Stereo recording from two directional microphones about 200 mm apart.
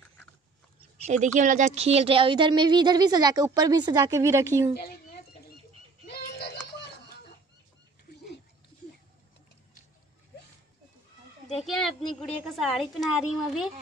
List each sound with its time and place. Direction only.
0.9 s speech: 35° right (ahead or behind); by 4.7 s 15° right (ahead or behind)
11.4 s a woman's voice: centre (ahead or behind)